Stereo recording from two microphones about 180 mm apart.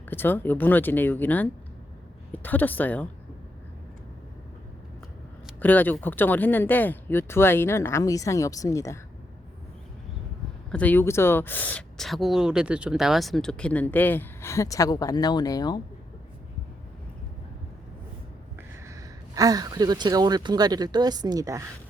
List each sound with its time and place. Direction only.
0.1 s speech: 10° left (ahead or behind)
5.5 s speech: 10° left (ahead or behind)
10.7 s speech: 10° left (ahead or behind)
18.9 s speech: 20° right (ahead or behind)